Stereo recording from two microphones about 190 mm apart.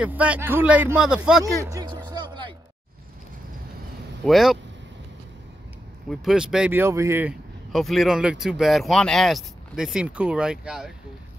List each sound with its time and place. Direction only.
0.0 s speech: 5° right (ahead or behind)
1.7 s music: 20° right (ahead or behind)
4.2 s speech: centre (ahead or behind)
6.0 s speech: 5° right (ahead or behind)
7.7 s speech: centre (ahead or behind)